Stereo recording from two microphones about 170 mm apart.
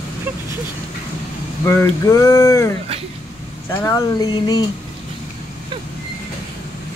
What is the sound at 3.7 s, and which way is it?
Speech, 20° left (ahead or behind).